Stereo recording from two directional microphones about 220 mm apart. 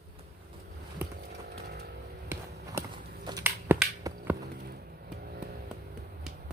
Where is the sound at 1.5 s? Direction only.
45° right (ahead or behind).